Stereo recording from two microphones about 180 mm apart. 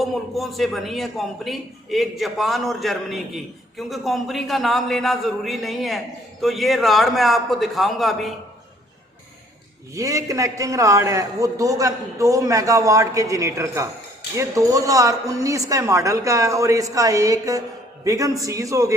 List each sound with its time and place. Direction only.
0.0 s a man's voice: centre (ahead or behind)
9.9 s a man's voice: 15° right (ahead or behind)